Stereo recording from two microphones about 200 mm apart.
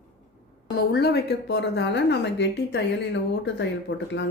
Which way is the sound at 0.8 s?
50° left (ahead or behind).